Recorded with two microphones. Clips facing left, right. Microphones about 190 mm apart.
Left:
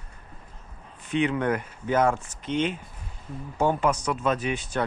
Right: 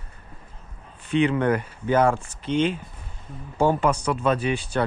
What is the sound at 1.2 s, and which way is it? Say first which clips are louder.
Speech: right 3 dB; 5° left (ahead or behind).